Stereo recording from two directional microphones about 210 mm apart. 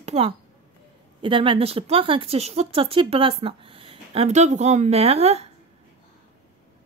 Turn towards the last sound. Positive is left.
turn(degrees=-30)  # may be behind; listen again after turning